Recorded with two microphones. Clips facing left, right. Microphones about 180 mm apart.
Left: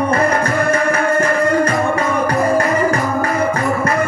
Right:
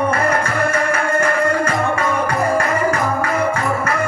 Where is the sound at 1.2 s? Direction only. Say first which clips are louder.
Left 3 dB; 35° left (ahead or behind).